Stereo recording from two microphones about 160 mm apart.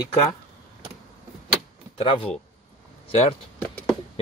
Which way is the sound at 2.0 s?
35° left (ahead or behind).